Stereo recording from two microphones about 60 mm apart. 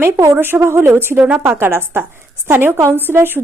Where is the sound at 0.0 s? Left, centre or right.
Right.